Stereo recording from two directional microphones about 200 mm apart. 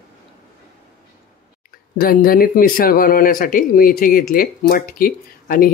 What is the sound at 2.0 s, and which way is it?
Speech, 45° left (ahead or behind).